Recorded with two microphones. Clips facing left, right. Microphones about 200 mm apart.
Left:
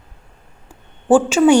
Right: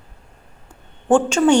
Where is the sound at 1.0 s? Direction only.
5° left (ahead or behind).